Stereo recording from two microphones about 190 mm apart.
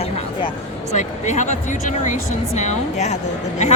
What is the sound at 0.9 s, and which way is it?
Speech, 40° left (ahead or behind).